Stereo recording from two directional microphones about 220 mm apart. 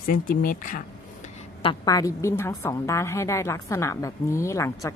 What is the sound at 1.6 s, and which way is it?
A woman's voice, 15° left (ahead or behind).